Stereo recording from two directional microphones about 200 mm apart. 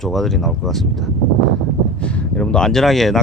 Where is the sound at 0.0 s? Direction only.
Centre (ahead or behind).